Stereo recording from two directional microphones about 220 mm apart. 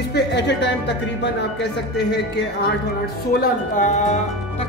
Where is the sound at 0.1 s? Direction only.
50° left (ahead or behind).